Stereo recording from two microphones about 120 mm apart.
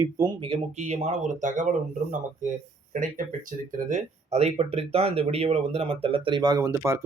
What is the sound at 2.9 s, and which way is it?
Speech, 90° right.